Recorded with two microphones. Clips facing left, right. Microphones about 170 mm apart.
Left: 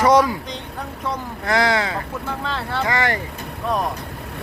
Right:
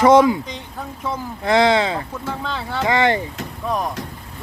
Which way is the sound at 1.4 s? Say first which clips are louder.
Right 4 dB; 25° right (ahead or behind).